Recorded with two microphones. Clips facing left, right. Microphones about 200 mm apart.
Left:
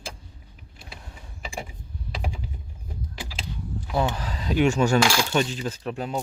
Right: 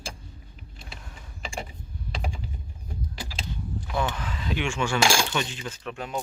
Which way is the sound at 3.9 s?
35° left (ahead or behind).